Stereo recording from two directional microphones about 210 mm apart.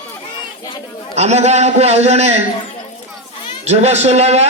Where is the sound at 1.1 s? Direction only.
30° right (ahead or behind).